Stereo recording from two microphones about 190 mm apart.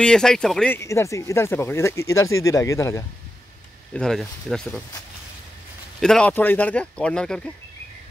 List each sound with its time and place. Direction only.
0.0 s speech: 5° left (ahead or behind)
0.7 s speech: 15° left (ahead or behind)
3.9 s speech: 5° left (ahead or behind)
5.9 s speech: 5° left (ahead or behind)